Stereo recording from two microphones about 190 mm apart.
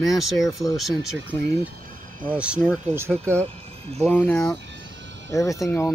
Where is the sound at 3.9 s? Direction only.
5° left (ahead or behind).